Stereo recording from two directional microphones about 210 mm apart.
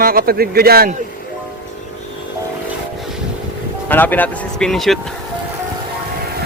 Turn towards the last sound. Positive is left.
turn(degrees=0)  # may be behind; listen again after turning